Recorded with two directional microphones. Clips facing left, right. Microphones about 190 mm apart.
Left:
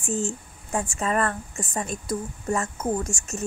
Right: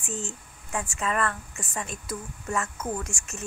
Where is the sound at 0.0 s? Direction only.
45° left (ahead or behind).